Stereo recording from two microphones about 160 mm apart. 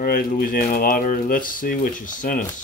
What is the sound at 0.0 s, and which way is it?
Speech, 65° left (ahead or behind).